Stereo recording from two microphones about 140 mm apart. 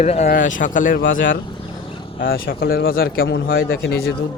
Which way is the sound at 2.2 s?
90° left.